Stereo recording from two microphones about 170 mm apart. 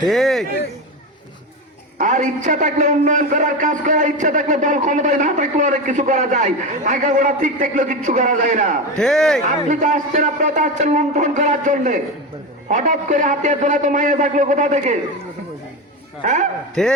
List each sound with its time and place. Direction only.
0.1 s a man's voice: centre (ahead or behind)
2.0 s a man's voice: 50° right (ahead or behind)
9.0 s a man's voice: centre (ahead or behind)
9.5 s a man's voice: 45° right (ahead or behind)
16.2 s a man's voice: 45° right (ahead or behind)
16.8 s a man's voice: 5° left (ahead or behind)